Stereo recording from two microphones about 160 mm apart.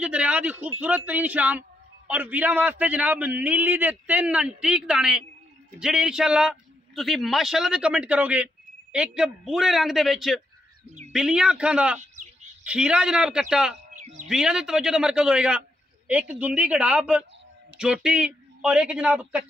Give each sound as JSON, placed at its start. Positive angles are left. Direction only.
{"t": 0.0, "sound": "a man's voice", "side_deg": -5}
{"t": 12.0, "sound": "a sound", "side_deg": -50}
{"t": 12.6, "sound": "a man's voice", "side_deg": -5}
{"t": 13.9, "sound": "bird", "side_deg": -50}
{"t": 14.2, "sound": "a man's voice", "side_deg": -5}